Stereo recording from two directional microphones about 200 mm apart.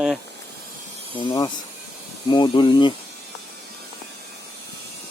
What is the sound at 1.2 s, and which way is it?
Speech, 20° left (ahead or behind).